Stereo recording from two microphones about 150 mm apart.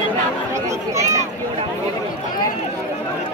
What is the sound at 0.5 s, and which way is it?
Chatter, 20° right (ahead or behind).